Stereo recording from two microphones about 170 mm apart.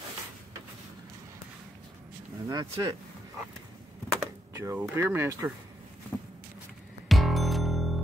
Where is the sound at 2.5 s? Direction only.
20° right (ahead or behind).